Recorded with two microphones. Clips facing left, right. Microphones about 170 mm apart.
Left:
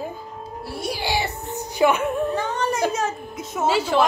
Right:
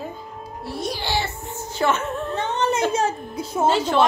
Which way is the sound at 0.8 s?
10° left (ahead or behind).